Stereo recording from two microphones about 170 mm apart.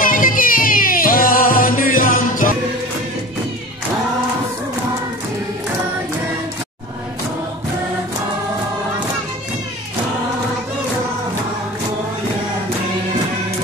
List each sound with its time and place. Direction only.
0.0 s music: 55° left (ahead or behind)